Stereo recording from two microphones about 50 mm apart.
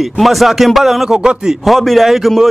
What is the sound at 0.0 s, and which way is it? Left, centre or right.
A man's voice, centre.